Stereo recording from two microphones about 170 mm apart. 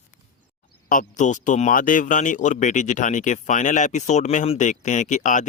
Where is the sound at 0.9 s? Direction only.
50° left (ahead or behind).